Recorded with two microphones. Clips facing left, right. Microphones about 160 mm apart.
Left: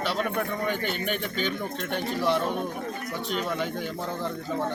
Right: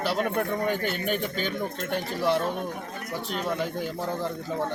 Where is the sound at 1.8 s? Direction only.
5° right (ahead or behind).